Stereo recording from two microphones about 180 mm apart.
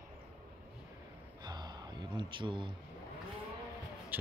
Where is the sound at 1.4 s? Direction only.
20° right (ahead or behind).